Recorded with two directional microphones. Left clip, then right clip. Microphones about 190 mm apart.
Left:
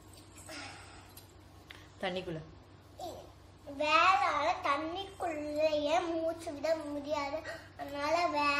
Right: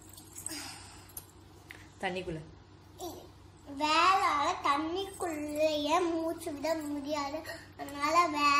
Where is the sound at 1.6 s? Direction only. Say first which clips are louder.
Right 1 dB; 10° left (ahead or behind).